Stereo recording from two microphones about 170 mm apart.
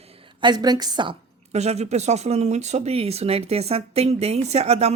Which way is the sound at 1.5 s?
40° right (ahead or behind).